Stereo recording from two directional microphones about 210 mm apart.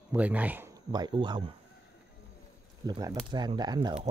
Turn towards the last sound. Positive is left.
turn(degrees=-25)  # may be behind; listen again after turning